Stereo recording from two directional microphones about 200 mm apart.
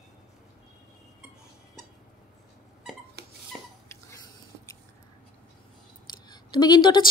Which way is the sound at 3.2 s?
55° right (ahead or behind).